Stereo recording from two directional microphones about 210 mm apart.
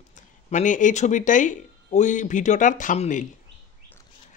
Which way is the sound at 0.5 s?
35° left (ahead or behind).